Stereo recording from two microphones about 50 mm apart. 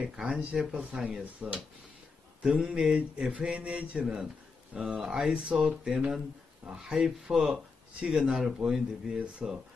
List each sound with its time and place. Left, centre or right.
0.1 s speech: centre
1.2 s speech: right
2.5 s speech: centre
3.5 s mantra: right
4.7 s speech: centre
5.3 s mantra: centre
5.9 s speech: centre
6.8 s speech: centre